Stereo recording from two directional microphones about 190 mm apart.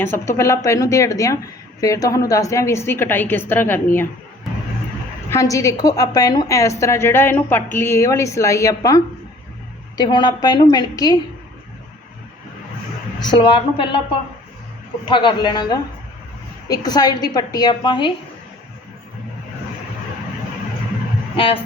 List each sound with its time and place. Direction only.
0.0 s a woman's voice: 15° left (ahead or behind)
5.3 s a woman's voice: 15° left (ahead or behind)
10.0 s a woman's voice: 25° left (ahead or behind)
13.2 s a woman's voice: 25° left (ahead or behind)
15.0 s a woman's voice: 25° left (ahead or behind)
21.3 s a woman's voice: 30° left (ahead or behind)